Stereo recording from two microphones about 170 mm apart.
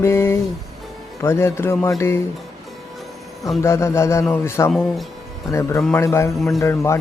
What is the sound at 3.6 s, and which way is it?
Speech, 15° left (ahead or behind).